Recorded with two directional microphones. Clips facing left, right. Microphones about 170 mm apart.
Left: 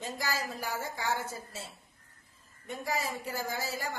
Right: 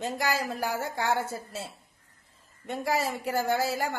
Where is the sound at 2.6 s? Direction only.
70° right (ahead or behind).